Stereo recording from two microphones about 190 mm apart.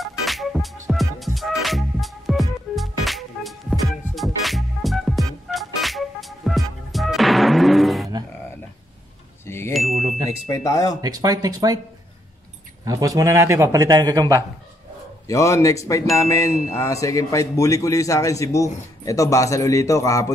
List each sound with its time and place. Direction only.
0.2 s music: centre (ahead or behind)
9.5 s chime: 15° left (ahead or behind)
9.8 s chime: centre (ahead or behind)
10.5 s speech: 15° left (ahead or behind)
11.0 s speech: 20° right (ahead or behind)
12.8 s a man's voice: 20° right (ahead or behind)
15.2 s speech: 15° left (ahead or behind)